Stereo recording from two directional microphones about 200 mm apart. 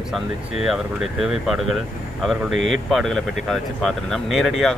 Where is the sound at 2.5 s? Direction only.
75° right (ahead or behind).